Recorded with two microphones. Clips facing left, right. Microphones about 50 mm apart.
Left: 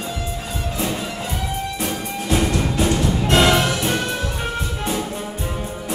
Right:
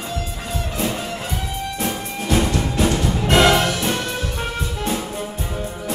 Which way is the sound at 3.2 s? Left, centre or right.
Right.